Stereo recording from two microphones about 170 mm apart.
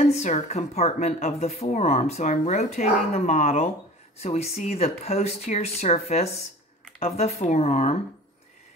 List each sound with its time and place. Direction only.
0.1 s speech: 40° left (ahead or behind)